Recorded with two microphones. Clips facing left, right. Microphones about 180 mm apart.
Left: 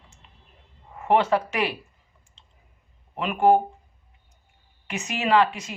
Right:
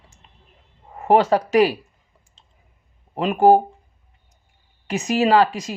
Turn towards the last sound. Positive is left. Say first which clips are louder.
# right 4 dB
turn(degrees=-40)  # may be behind; listen again after turning